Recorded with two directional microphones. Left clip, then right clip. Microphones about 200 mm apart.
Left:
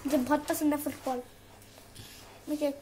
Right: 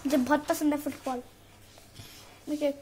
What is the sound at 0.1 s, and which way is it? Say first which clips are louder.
Speech: right 2 dB; 25° right (ahead or behind).